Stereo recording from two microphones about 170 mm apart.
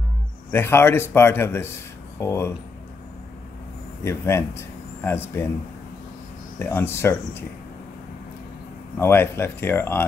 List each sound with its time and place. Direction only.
0.5 s speech: 15° left (ahead or behind)
4.0 s speech: 15° left (ahead or behind)
6.6 s speech: 15° left (ahead or behind)
8.9 s speech: 15° left (ahead or behind)